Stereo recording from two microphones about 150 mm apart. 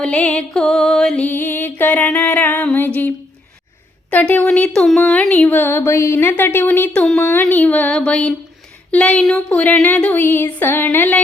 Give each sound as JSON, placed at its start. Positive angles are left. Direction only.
{"t": 0.0, "sound": "speech", "side_deg": 10}
{"t": 4.1, "sound": "speech", "side_deg": 10}